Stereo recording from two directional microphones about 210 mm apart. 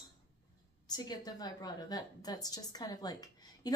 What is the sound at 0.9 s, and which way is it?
A woman's voice, 20° left (ahead or behind).